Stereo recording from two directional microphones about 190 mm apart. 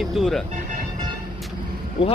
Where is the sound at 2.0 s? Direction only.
30° left (ahead or behind).